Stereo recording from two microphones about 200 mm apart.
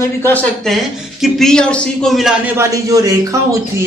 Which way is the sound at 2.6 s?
15° right (ahead or behind).